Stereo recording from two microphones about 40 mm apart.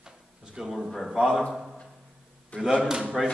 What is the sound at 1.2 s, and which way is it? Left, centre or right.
Speech, right.